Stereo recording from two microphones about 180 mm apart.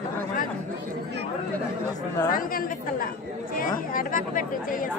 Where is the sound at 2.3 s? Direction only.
50° left (ahead or behind).